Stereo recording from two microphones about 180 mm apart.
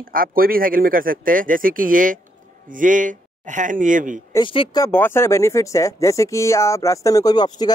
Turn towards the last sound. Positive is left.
turn(degrees=20)  # may be behind; listen again after turning